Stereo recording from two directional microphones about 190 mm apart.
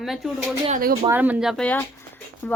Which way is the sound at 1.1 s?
10° right (ahead or behind).